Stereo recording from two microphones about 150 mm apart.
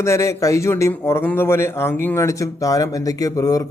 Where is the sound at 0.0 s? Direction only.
20° left (ahead or behind).